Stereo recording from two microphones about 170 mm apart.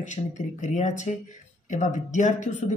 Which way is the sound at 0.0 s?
45° left (ahead or behind).